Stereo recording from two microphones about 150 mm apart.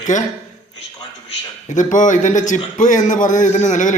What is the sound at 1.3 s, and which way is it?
A man's voice, 55° left (ahead or behind).